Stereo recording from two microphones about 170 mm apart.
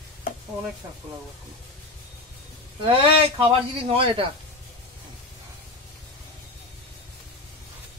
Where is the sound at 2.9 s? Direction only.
30° right (ahead or behind).